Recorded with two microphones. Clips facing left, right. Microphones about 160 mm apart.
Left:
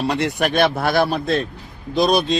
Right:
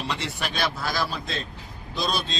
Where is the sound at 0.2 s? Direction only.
55° left (ahead or behind).